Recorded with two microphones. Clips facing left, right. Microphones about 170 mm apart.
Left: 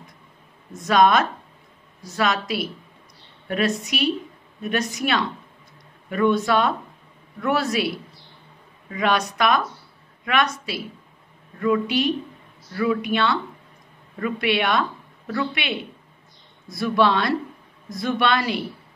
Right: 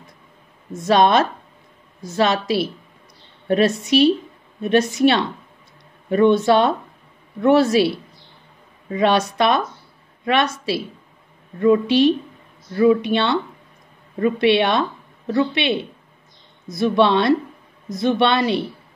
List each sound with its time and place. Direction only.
0.7 s speech: 30° right (ahead or behind)
11.6 s speech: 30° right (ahead or behind)